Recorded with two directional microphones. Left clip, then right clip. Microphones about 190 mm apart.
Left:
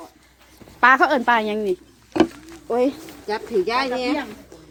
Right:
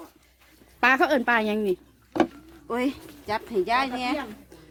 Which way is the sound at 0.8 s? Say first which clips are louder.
Left 6 dB; 30° right (ahead or behind).